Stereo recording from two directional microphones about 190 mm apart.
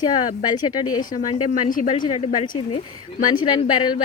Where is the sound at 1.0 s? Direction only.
45° left (ahead or behind).